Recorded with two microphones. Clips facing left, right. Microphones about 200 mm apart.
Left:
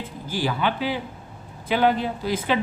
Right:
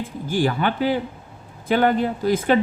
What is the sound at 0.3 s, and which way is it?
Speech, 50° right (ahead or behind).